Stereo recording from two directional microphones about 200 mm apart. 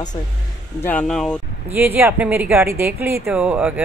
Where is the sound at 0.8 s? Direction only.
5° left (ahead or behind).